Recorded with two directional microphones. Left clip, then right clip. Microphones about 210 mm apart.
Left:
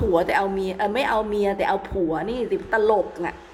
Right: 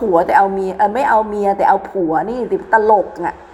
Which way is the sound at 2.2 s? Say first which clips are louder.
Right 6 dB; 35° right (ahead or behind).